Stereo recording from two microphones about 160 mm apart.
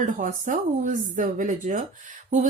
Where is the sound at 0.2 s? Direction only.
55° right (ahead or behind).